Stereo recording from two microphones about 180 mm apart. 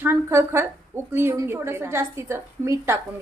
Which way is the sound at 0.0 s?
15° right (ahead or behind).